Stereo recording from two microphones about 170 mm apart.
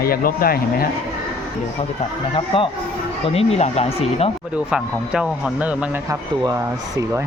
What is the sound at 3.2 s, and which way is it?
Speech, 35° left (ahead or behind).